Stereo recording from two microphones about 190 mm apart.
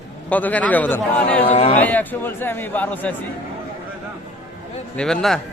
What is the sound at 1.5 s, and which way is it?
Speech, 35° left (ahead or behind).